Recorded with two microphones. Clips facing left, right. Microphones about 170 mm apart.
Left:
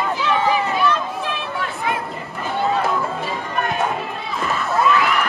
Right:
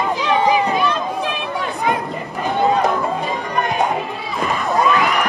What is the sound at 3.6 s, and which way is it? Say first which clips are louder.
Music: right 3 dB; 15° right (ahead or behind).